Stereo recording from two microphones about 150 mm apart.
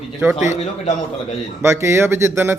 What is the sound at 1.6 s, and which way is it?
Speech, 15° right (ahead or behind).